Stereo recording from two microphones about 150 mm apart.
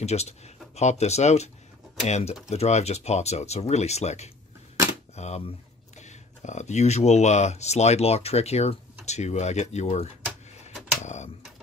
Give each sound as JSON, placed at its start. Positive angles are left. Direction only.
{"t": 0.0, "sound": "speech", "side_deg": 45}